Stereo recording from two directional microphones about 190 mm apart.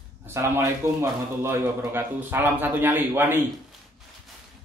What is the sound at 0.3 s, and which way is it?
Speech, 15° right (ahead or behind).